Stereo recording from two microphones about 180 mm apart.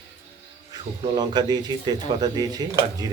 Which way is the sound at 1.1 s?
25° right (ahead or behind).